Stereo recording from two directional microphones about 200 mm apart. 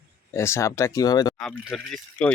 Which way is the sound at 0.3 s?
15° left (ahead or behind).